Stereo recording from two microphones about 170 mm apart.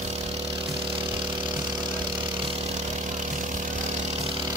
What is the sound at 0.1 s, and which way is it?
Vehicle, 35° right (ahead or behind).